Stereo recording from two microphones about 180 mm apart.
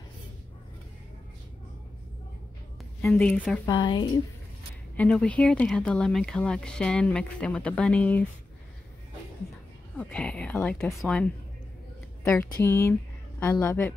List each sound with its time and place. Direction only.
3.0 s a woman's voice: 5° left (ahead or behind)
3.6 s speech: 25° left (ahead or behind)
4.9 s speech: 5° left (ahead or behind)
9.9 s a woman's voice: 5° left (ahead or behind)